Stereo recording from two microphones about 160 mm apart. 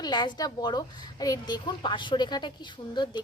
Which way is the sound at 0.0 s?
25° left (ahead or behind).